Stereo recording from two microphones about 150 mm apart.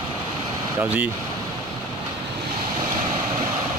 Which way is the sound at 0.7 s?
10° right (ahead or behind).